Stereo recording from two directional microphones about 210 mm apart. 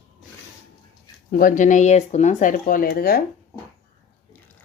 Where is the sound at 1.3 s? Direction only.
40° left (ahead or behind).